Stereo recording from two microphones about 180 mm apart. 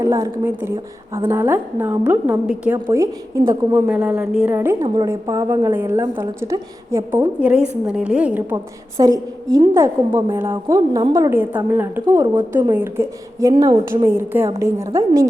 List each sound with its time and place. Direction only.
0.0 s a woman's voice: 15° right (ahead or behind)
3.8 s a woman's voice: 5° right (ahead or behind)